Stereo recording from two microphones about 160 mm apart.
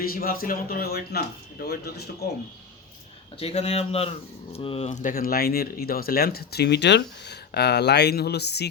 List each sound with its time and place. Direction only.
0.0 s a man's voice: 65° left (ahead or behind); by 2.0 s 80° left
3.3 s a man's voice: 40° left (ahead or behind)
4.9 s speech: 55° left (ahead or behind); by 8.7 s 90° left